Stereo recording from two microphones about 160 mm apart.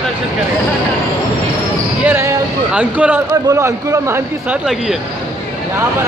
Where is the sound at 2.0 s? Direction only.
15° right (ahead or behind).